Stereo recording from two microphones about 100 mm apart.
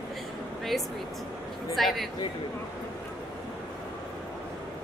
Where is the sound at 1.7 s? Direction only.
Centre (ahead or behind).